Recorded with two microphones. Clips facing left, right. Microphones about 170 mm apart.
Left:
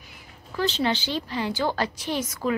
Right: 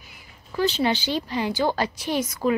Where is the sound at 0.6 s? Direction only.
10° right (ahead or behind).